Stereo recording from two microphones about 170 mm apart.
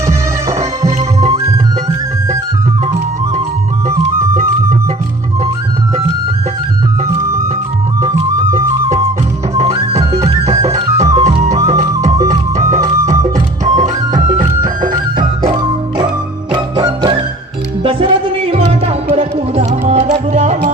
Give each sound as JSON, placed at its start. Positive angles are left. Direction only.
{"t": 0.0, "sound": "music", "side_deg": -20}
{"t": 8.0, "sound": "music", "side_deg": -20}
{"t": 10.5, "sound": "music", "side_deg": -20}
{"t": 11.1, "sound": "music", "side_deg": -35}
{"t": 11.4, "sound": "music", "side_deg": -20}
{"t": 16.5, "sound": "music", "side_deg": -25}